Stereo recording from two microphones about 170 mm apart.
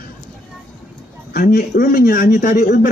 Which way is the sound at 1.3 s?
55° left (ahead or behind).